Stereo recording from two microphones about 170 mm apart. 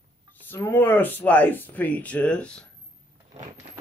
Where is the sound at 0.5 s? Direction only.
10° left (ahead or behind).